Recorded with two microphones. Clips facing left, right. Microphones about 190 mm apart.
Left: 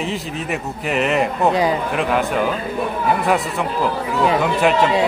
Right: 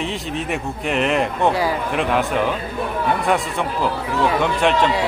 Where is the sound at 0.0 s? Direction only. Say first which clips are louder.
Even; centre (ahead or behind).